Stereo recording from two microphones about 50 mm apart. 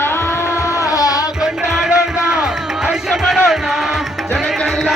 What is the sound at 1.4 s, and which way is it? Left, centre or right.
Music, centre.